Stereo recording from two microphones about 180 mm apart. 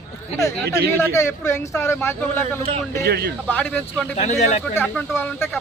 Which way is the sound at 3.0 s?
60° right (ahead or behind).